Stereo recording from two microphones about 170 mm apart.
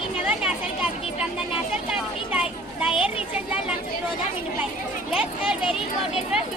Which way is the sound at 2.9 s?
30° left (ahead or behind).